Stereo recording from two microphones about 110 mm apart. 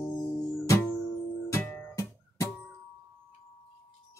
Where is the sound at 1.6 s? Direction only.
20° left (ahead or behind).